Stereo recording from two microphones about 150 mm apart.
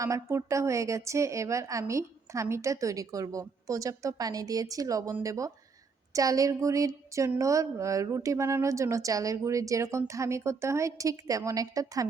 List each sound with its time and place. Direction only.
0.0 s a woman's voice: 20° right (ahead or behind)